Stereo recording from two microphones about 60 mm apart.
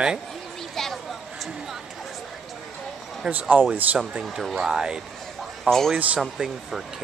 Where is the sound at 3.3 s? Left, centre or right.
Right.